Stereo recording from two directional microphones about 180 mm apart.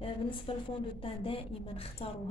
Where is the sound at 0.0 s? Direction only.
30° left (ahead or behind).